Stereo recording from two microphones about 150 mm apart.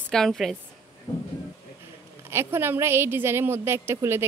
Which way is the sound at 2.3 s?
15° right (ahead or behind).